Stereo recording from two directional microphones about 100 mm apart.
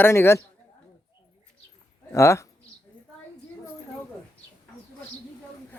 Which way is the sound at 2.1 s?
30° left (ahead or behind).